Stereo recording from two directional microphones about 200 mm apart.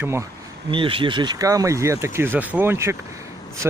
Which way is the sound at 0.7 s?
25° right (ahead or behind).